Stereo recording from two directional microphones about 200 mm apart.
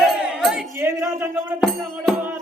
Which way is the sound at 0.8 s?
10° right (ahead or behind).